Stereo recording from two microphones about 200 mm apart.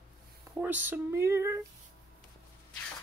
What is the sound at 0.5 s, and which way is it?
Speech, 10° right (ahead or behind).